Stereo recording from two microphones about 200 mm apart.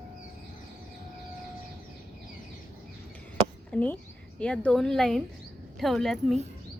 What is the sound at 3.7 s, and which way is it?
A woman's voice, 10° left (ahead or behind).